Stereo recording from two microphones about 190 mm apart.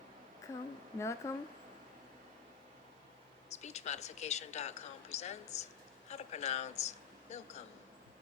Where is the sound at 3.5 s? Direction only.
35° left (ahead or behind).